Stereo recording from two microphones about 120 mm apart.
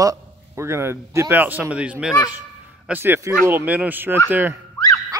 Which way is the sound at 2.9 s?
20° right (ahead or behind).